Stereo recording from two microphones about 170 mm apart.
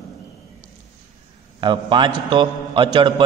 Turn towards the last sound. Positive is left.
turn(degrees=-25)  # may be behind; listen again after turning